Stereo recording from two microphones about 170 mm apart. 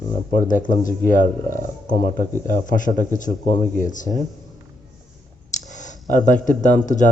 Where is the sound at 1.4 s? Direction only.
20° left (ahead or behind).